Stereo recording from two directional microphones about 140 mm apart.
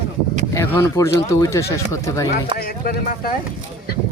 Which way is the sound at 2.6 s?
90° left.